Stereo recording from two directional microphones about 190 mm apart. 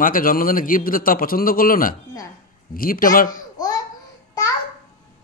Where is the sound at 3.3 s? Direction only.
20° left (ahead or behind).